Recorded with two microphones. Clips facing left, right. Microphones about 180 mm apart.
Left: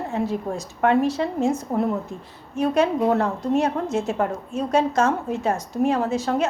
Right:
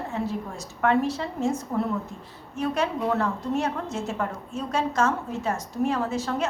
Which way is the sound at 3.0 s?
40° left (ahead or behind).